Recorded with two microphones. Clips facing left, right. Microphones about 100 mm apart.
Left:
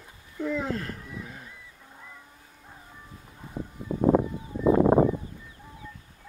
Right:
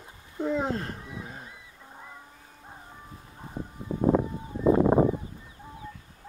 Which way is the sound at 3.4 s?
20° right (ahead or behind).